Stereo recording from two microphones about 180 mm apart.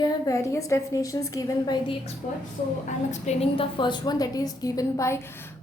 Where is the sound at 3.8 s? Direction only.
25° left (ahead or behind).